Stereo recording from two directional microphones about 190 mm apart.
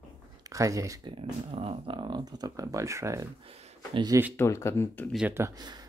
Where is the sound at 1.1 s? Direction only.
30° right (ahead or behind).